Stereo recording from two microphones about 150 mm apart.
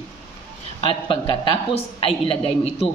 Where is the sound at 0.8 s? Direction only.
35° left (ahead or behind).